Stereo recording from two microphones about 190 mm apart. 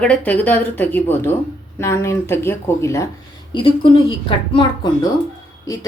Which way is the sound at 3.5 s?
25° left (ahead or behind).